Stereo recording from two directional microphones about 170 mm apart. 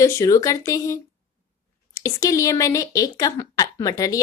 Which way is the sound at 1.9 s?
20° left (ahead or behind).